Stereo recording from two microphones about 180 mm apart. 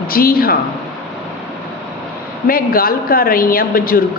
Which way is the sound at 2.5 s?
55° left (ahead or behind).